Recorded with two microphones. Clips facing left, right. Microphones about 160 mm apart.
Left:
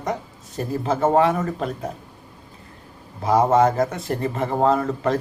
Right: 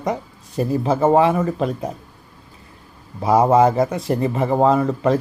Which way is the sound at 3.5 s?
10° right (ahead or behind).